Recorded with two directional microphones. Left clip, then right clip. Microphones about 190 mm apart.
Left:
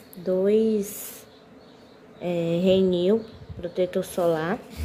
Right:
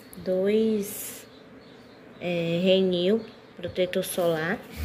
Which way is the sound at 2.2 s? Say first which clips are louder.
Left 2 dB; 10° left (ahead or behind).